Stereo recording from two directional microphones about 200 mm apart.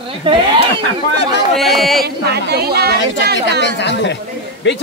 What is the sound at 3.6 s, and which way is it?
A woman's voice, 60° left (ahead or behind).